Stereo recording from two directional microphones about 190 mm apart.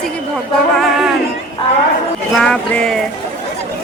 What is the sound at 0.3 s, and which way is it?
Music, centre (ahead or behind).